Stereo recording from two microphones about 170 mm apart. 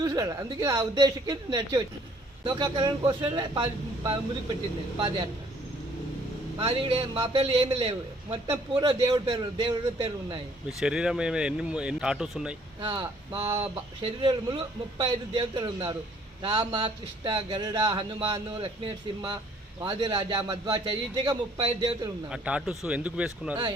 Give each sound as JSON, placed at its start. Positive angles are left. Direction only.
{"t": 0.0, "sound": "speech", "side_deg": -20}
{"t": 6.6, "sound": "a man's voice", "side_deg": -30}
{"t": 10.8, "sound": "speech", "side_deg": -5}
{"t": 12.8, "sound": "speech", "side_deg": -25}
{"t": 22.3, "sound": "speech", "side_deg": -5}